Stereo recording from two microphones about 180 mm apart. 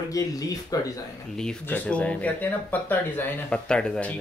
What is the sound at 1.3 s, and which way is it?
Speech, 5° left (ahead or behind).